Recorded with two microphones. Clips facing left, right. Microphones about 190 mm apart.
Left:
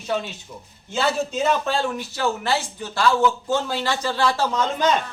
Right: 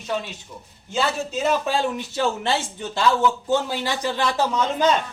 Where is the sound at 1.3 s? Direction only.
10° right (ahead or behind).